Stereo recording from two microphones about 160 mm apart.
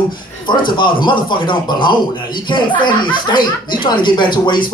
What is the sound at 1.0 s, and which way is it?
Speech, 30° left (ahead or behind).